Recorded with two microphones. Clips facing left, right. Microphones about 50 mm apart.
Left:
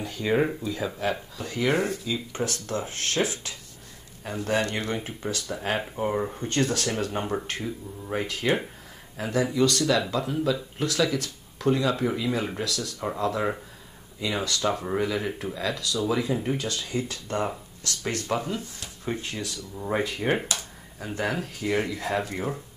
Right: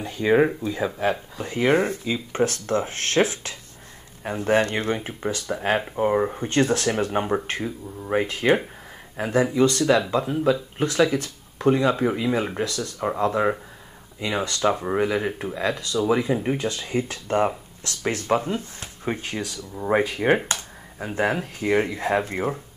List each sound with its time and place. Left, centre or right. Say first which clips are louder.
0.0 s speech: right 5 dB; centre
1.4 s speech: right 5 dB; right
4.9 s speech: right 3 dB; centre